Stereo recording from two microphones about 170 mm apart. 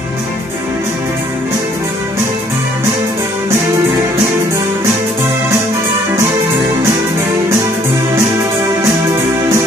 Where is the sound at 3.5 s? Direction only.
15° right (ahead or behind).